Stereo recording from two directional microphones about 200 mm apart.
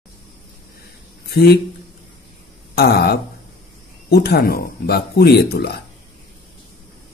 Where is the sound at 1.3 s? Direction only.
55° left (ahead or behind).